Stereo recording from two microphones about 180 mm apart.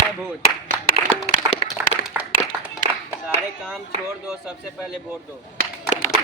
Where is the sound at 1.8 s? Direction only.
10° right (ahead or behind).